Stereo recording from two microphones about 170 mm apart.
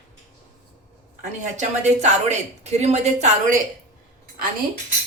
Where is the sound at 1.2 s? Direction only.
45° right (ahead or behind).